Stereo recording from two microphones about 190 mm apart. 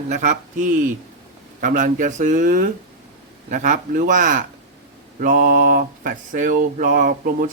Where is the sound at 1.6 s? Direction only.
45° right (ahead or behind).